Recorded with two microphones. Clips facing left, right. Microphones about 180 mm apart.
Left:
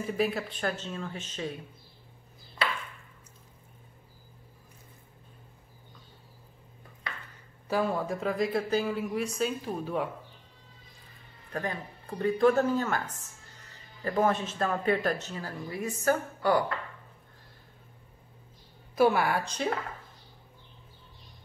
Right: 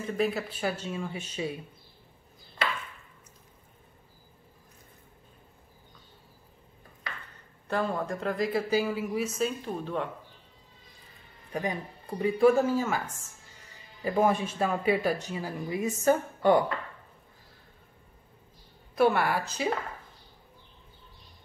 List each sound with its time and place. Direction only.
0.0 s speech: centre (ahead or behind)
7.6 s speech: 5° left (ahead or behind)
11.5 s a woman's voice: 10° right (ahead or behind)
18.9 s speech: centre (ahead or behind)